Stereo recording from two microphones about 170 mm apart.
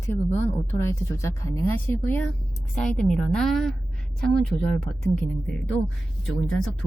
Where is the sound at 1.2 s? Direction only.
15° left (ahead or behind).